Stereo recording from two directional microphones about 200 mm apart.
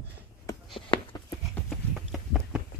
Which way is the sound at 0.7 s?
25° left (ahead or behind).